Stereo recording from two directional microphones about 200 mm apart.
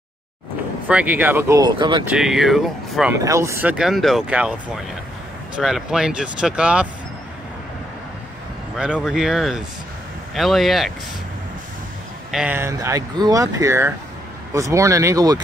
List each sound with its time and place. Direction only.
0.8 s speech: 5° right (ahead or behind)
1.6 s speech: 20° right (ahead or behind)
2.0 s speech: centre (ahead or behind)
3.2 s speech: 15° right (ahead or behind)
8.7 s speech: 5° right (ahead or behind)
12.3 s speech: 5° right (ahead or behind)